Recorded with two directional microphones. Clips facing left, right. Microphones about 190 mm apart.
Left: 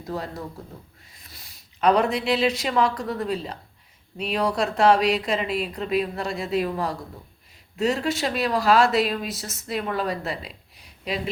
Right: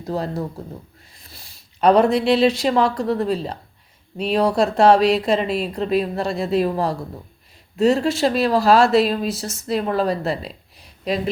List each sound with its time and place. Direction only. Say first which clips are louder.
0.1 s speech: right 7 dB; 35° right (ahead or behind)